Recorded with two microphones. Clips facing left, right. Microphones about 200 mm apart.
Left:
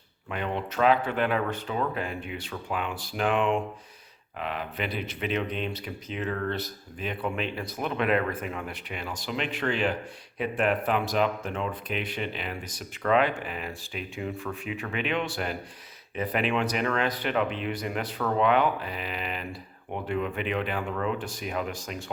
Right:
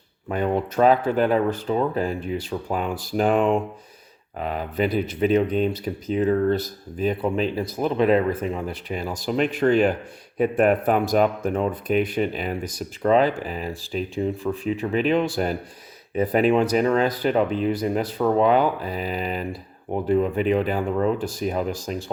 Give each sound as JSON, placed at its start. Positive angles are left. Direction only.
{"t": 0.3, "sound": "speech", "side_deg": -45}